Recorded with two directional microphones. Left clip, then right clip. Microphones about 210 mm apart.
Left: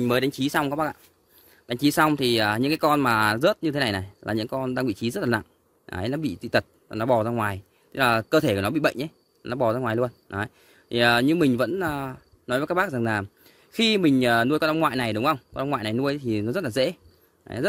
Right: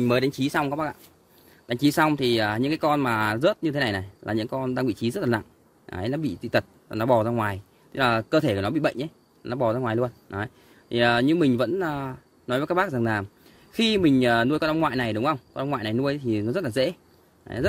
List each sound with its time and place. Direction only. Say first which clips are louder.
0.0 s speech: even; 15° left (ahead or behind)
1.7 s speech: left 1 dB; 10° left (ahead or behind)